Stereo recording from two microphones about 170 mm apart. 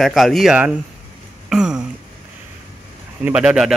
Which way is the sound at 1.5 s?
5° right (ahead or behind).